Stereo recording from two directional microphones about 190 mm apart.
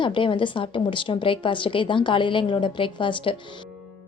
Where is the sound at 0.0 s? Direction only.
25° left (ahead or behind).